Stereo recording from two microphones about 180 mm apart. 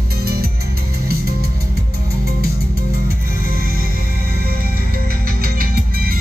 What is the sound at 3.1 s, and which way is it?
Music, 55° right (ahead or behind).